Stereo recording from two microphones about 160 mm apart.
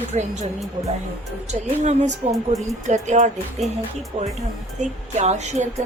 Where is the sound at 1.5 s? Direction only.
45° right (ahead or behind).